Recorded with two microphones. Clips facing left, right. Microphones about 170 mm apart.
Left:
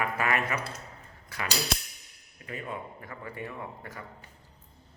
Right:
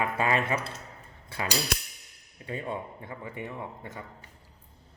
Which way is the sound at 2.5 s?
30° right (ahead or behind).